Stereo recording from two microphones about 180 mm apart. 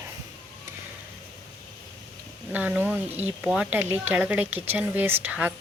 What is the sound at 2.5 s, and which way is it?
Speech, 10° right (ahead or behind).